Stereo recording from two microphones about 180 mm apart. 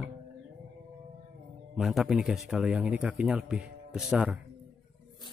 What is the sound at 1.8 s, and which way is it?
A man's voice, centre (ahead or behind).